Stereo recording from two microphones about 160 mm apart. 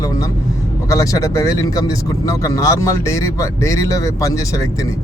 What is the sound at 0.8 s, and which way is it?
A man's voice, 20° left (ahead or behind).